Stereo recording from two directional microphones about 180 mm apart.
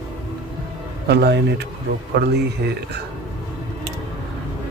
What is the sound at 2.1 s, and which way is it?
Speech, 70° right (ahead or behind).